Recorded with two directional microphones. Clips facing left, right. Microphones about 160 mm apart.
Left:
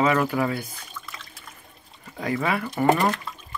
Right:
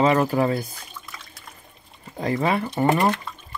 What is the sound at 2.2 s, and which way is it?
Speech, 30° right (ahead or behind).